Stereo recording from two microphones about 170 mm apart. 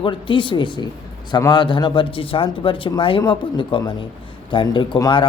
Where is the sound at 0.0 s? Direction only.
30° left (ahead or behind).